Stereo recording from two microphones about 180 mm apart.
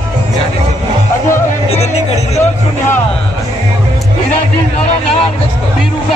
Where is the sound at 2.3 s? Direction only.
10° left (ahead or behind).